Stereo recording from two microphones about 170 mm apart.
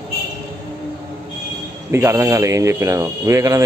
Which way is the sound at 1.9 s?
15° right (ahead or behind).